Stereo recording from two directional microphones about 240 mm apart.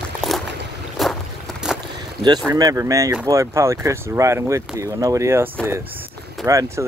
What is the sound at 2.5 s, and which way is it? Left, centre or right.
Speech, centre.